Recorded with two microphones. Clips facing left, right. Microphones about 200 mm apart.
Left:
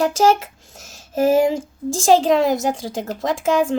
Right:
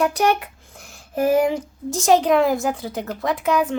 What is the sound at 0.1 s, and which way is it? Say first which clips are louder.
Speech: left 4 dB; 90° left.